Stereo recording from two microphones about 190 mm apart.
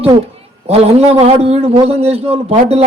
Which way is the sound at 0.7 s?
30° right (ahead or behind).